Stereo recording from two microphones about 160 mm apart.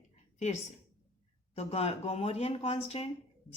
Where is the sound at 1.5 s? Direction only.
40° left (ahead or behind).